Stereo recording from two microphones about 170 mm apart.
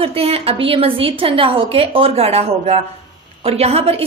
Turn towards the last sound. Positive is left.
turn(degrees=-35)  # may be behind; listen again after turning